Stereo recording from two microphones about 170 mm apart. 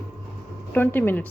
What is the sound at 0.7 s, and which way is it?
Speech, 10° left (ahead or behind).